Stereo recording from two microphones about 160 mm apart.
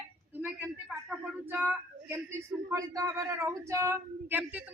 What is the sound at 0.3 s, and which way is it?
Speech, 10° right (ahead or behind).